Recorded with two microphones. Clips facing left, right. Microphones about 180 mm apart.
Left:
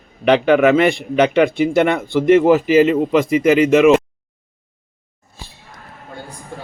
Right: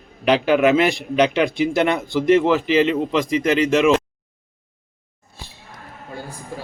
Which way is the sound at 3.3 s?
5° left (ahead or behind).